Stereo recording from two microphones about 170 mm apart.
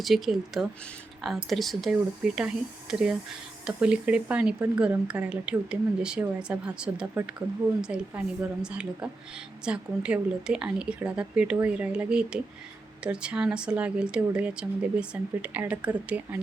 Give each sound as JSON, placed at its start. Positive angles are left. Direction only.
{"t": 0.0, "sound": "speech", "side_deg": 0}